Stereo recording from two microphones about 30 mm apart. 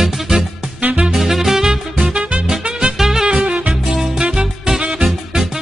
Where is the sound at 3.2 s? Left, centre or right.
Right.